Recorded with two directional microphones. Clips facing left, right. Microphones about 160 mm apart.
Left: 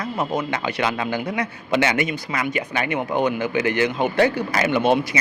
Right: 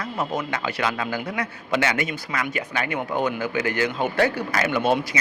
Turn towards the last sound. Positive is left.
turn(degrees=30)  # may be behind; listen again after turning